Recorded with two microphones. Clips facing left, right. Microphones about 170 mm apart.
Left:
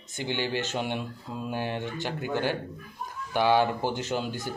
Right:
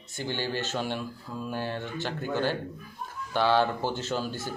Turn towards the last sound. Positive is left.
turn(degrees=15)  # may be behind; listen again after turning